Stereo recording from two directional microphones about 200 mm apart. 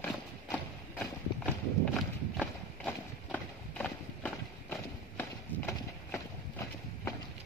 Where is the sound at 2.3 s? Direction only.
5° left (ahead or behind).